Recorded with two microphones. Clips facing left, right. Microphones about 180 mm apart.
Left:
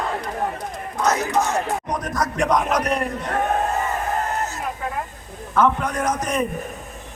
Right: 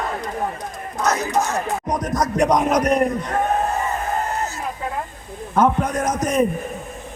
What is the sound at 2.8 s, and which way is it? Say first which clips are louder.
Speech: right 5 dB; 40° right (ahead or behind).